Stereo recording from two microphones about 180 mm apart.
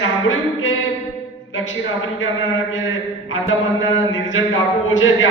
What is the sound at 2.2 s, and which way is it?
A man's voice, 90° left.